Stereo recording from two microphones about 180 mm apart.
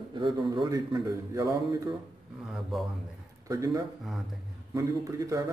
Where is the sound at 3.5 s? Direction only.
20° right (ahead or behind).